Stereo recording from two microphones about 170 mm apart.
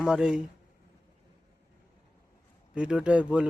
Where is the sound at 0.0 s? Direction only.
5° right (ahead or behind).